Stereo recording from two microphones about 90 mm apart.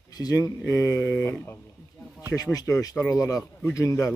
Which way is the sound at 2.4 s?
40° left (ahead or behind).